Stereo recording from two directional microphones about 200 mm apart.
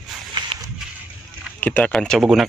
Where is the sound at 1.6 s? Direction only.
5° left (ahead or behind).